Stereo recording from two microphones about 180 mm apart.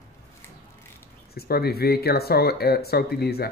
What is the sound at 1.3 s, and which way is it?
Speech, 60° left (ahead or behind).